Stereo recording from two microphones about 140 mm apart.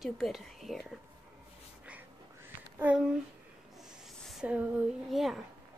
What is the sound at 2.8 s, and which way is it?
Speech, 10° right (ahead or behind).